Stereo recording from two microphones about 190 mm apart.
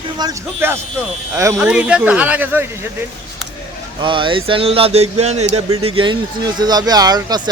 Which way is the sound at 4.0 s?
25° right (ahead or behind).